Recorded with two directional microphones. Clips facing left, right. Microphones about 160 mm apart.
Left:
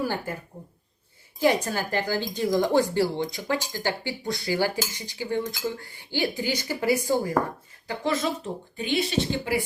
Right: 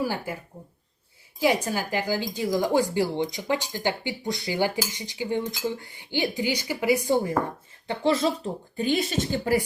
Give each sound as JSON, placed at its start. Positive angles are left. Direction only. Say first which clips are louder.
{"t": 0.0, "sound": "speech", "louder": "even", "side_deg": -10}
{"t": 1.6, "sound": "speech", "louder": "even", "side_deg": -10}
{"t": 8.7, "sound": "speech", "louder": "right 1 dB", "side_deg": -40}